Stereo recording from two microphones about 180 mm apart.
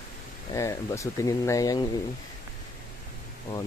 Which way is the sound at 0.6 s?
15° left (ahead or behind).